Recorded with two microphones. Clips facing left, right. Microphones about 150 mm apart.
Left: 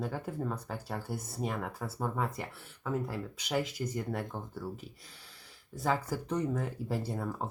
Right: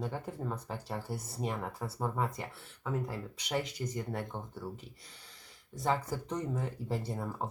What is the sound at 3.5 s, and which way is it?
Speech, centre (ahead or behind).